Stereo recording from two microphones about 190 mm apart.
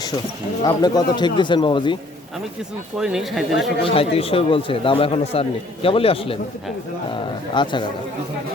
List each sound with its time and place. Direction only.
0.6 s speech: 20° left (ahead or behind)
3.0 s speech: centre (ahead or behind)
3.8 s speech: 30° left (ahead or behind)